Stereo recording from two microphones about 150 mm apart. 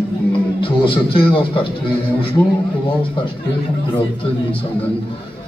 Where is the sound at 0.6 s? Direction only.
35° left (ahead or behind).